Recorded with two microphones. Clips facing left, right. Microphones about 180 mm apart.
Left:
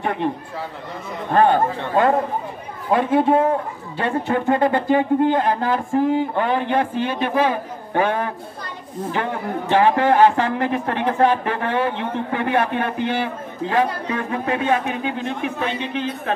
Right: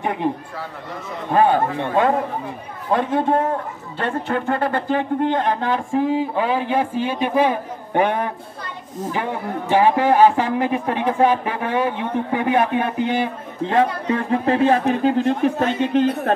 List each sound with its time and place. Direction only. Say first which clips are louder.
0.0 s a man's voice: even; 15° right (ahead or behind)
1.3 s a man's voice: even; 10° right (ahead or behind)
2.9 s a man's voice: left 2 dB; 10° left (ahead or behind); by 16.1 s 45° right (ahead or behind)